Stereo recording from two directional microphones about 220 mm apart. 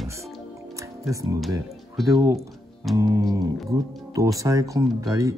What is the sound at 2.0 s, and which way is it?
Speech, 15° right (ahead or behind).